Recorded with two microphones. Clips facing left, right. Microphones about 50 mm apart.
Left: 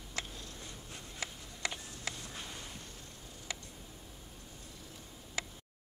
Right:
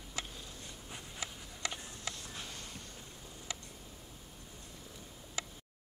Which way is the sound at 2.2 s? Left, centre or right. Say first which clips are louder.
Left 1 dB; centre.